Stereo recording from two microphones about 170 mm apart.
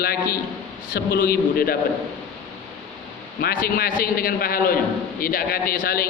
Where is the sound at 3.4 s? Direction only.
60° left (ahead or behind).